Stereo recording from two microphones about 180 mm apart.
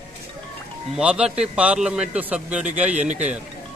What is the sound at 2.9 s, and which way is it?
Speech, 40° right (ahead or behind).